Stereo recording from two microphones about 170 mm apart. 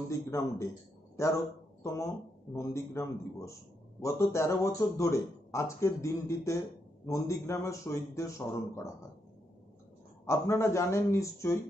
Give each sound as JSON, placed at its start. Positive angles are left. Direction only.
{"t": 0.1, "sound": "speech", "side_deg": 15}
{"t": 10.2, "sound": "speech", "side_deg": 15}